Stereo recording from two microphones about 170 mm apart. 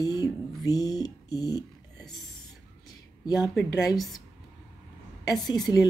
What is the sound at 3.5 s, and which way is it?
Speech, centre (ahead or behind).